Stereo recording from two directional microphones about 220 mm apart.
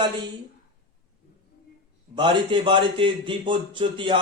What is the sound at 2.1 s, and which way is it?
A man's voice, 20° right (ahead or behind).